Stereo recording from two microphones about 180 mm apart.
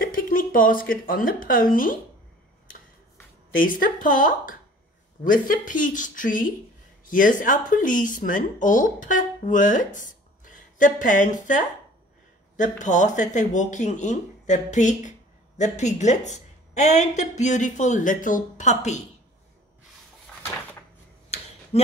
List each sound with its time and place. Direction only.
0.0 s a woman's voice: 50° left (ahead or behind)
3.5 s speech: 50° left (ahead or behind)
21.7 s speech: 35° left (ahead or behind)